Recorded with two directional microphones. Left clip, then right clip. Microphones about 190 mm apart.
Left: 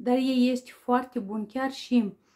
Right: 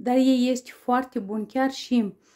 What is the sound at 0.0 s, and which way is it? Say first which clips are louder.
Speech: right 3 dB; 35° right (ahead or behind).